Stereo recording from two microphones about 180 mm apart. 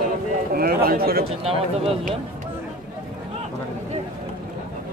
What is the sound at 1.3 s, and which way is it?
Speech, 35° right (ahead or behind).